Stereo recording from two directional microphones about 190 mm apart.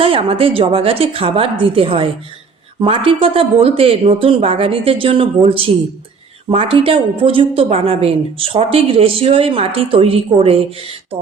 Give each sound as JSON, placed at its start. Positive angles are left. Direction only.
{"t": 0.0, "sound": "a woman's voice", "side_deg": -30}